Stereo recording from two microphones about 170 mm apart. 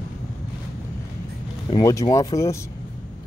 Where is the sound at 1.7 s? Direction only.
20° left (ahead or behind).